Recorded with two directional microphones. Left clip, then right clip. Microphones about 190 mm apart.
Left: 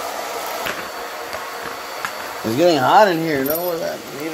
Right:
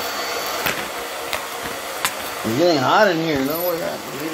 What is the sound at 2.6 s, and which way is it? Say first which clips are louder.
Speech: left 3 dB; 40° left (ahead or behind).